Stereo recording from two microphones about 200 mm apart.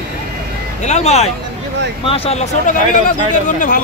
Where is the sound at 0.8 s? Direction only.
35° left (ahead or behind).